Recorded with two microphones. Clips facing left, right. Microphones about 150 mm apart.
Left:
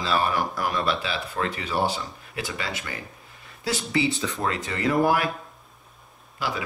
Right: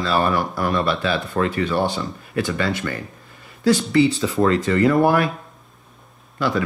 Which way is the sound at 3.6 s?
5° left (ahead or behind).